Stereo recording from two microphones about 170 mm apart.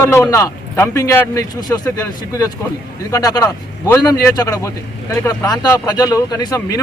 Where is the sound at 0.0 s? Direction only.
15° left (ahead or behind).